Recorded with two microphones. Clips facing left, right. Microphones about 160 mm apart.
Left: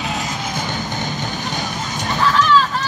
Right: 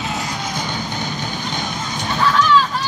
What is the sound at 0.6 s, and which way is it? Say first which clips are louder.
Music: left 1 dB; 50° left (ahead or behind).